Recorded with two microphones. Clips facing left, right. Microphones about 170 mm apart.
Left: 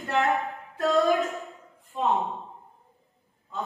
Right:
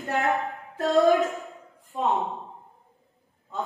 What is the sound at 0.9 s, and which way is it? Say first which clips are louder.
Speech: right 4 dB; centre (ahead or behind).